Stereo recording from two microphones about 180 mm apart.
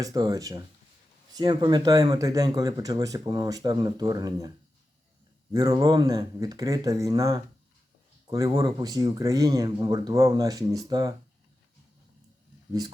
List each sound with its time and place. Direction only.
0.0 s speech: 20° right (ahead or behind)